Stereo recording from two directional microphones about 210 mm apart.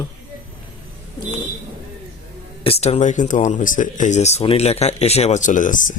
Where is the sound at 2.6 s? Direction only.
30° left (ahead or behind).